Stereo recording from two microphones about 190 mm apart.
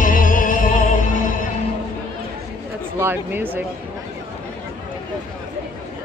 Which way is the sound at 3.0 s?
10° right (ahead or behind).